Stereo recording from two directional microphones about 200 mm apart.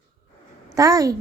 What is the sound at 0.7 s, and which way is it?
Speech, 15° right (ahead or behind).